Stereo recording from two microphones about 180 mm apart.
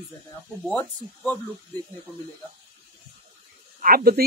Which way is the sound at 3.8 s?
55° right (ahead or behind).